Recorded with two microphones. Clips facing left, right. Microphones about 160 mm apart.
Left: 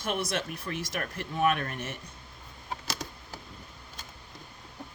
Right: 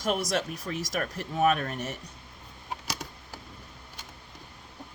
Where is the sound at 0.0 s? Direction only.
40° right (ahead or behind).